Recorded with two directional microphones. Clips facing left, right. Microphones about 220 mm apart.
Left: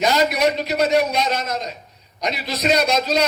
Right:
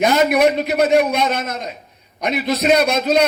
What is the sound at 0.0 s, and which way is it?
A man's voice, 55° right (ahead or behind).